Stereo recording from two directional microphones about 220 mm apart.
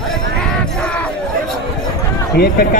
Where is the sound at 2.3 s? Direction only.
45° left (ahead or behind).